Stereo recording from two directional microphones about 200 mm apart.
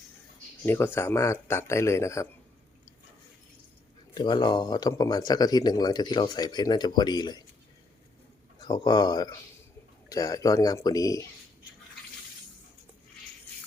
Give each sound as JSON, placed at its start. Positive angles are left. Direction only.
{"t": 0.6, "sound": "speech", "side_deg": 10}
{"t": 4.1, "sound": "speech", "side_deg": 20}
{"t": 8.5, "sound": "speech", "side_deg": 20}